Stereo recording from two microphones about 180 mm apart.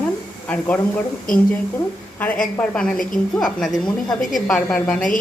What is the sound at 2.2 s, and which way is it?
Speech, 5° left (ahead or behind).